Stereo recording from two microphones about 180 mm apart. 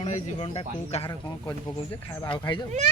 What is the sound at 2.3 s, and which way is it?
Speech, 25° left (ahead or behind).